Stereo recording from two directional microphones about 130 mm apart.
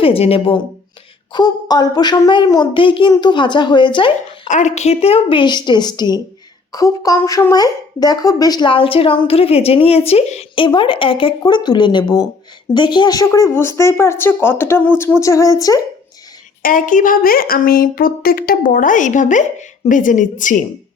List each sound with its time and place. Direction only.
0.0 s a woman's voice: 50° left (ahead or behind)
1.3 s speech: 30° left (ahead or behind)
4.4 s a woman's voice: 65° left (ahead or behind); by 15.8 s 25° left (ahead or behind)
16.6 s a woman's voice: 90° left